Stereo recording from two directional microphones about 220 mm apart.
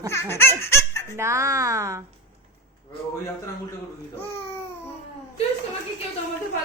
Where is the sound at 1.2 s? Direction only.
10° right (ahead or behind).